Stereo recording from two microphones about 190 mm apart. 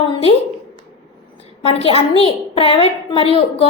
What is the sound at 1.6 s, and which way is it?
A woman's voice, 30° left (ahead or behind).